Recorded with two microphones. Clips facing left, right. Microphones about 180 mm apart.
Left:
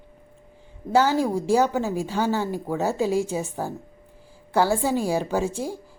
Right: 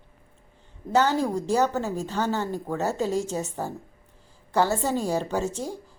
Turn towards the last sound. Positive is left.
turn(degrees=5)  # may be behind; listen again after turning